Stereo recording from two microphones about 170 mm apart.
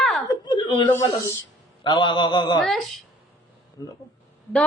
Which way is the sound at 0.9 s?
15° left (ahead or behind).